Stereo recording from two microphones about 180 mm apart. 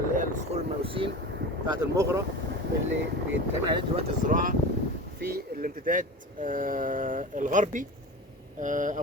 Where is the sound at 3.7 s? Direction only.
35° right (ahead or behind).